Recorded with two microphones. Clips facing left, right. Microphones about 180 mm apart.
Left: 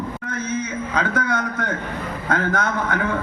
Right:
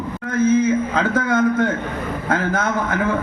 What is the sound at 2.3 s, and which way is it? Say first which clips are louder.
Speech: right 1 dB; 25° right (ahead or behind).